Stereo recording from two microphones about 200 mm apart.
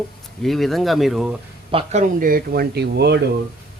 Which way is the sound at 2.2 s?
45° right (ahead or behind).